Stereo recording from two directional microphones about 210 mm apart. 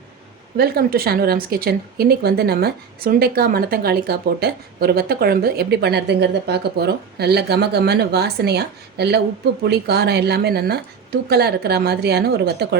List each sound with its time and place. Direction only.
0.5 s speech: 45° right (ahead or behind)